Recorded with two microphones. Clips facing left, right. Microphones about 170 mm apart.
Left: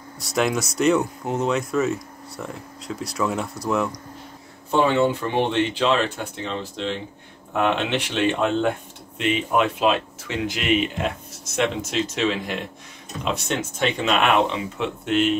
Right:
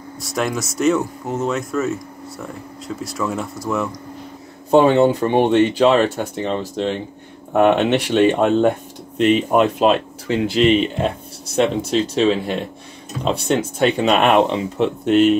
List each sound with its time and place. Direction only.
0.2 s speech: centre (ahead or behind)
4.6 s speech: 40° right (ahead or behind)